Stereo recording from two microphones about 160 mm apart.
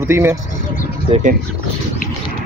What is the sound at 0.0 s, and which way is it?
Speech, 15° right (ahead or behind).